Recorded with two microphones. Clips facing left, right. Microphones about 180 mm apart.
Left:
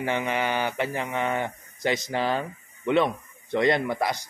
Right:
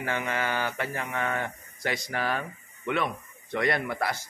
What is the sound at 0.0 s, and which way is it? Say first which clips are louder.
A man's voice: left 4 dB; 20° left (ahead or behind).